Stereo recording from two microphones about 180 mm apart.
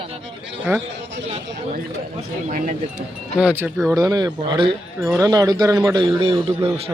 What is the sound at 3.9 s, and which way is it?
Speech, 20° right (ahead or behind).